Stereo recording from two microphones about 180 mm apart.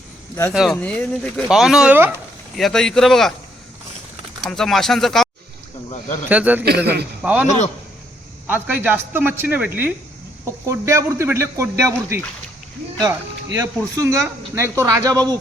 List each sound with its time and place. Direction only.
0.5 s speech: 5° right (ahead or behind)
4.4 s speech: centre (ahead or behind)
6.2 s a man's voice: 10° right (ahead or behind)
6.7 s a man's voice: 65° right (ahead or behind)
7.2 s a man's voice: 5° right (ahead or behind)
8.4 s a man's voice: 10° right (ahead or behind)
13.6 s speech: 15° right (ahead or behind)